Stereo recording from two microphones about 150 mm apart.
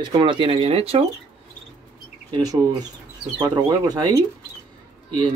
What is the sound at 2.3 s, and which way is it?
Speech, 25° right (ahead or behind).